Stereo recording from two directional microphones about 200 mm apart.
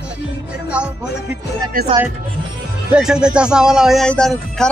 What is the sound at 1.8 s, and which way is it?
Speech, 45° right (ahead or behind).